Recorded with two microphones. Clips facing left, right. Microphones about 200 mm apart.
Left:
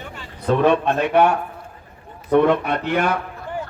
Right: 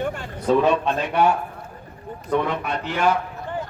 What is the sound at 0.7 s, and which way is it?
Speech, 60° left (ahead or behind).